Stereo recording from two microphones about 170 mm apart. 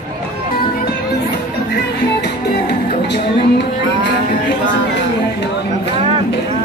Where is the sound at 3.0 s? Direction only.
90° left.